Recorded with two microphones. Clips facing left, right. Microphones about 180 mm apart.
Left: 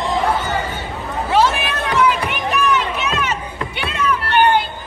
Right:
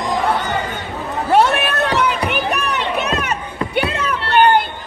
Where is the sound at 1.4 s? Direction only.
65° right (ahead or behind).